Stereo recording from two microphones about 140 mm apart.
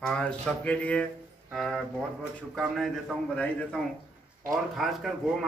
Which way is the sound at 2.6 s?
5° right (ahead or behind).